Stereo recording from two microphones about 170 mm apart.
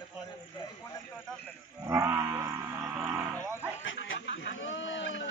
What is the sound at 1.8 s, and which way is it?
Livestock, 15° right (ahead or behind).